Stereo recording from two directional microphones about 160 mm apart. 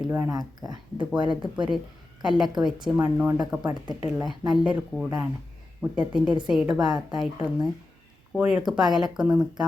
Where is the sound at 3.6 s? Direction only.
25° right (ahead or behind).